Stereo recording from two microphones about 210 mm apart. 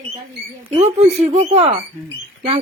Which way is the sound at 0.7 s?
30° right (ahead or behind).